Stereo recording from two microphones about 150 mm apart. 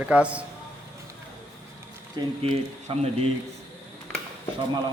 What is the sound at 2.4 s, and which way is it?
Speech, 45° right (ahead or behind).